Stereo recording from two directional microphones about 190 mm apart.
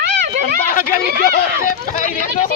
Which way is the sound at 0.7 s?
45° left (ahead or behind).